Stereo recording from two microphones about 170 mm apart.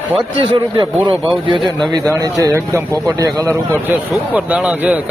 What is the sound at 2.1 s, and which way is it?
Speech, 20° right (ahead or behind).